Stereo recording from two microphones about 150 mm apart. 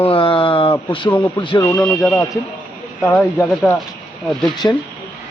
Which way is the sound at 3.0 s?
5° left (ahead or behind).